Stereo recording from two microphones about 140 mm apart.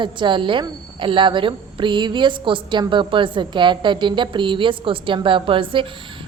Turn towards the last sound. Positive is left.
turn(degrees=-40)  # may be behind; listen again after turning